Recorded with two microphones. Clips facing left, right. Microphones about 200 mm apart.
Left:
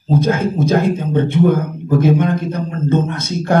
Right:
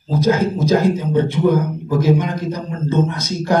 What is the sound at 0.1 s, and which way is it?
Speech, 55° left (ahead or behind).